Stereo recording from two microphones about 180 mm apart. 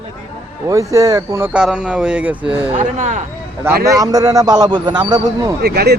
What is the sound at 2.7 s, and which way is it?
Speech, 40° right (ahead or behind).